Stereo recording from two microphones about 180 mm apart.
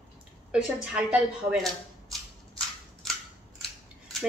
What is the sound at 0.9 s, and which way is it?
Speech, 5° right (ahead or behind).